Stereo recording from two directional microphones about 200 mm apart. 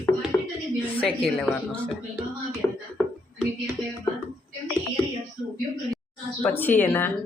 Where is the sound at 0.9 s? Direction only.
5° left (ahead or behind).